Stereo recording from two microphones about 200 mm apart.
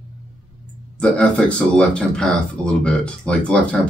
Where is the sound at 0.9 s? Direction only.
5° left (ahead or behind).